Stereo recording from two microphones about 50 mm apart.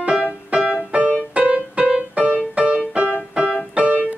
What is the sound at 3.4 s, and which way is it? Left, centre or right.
Keyboard, centre.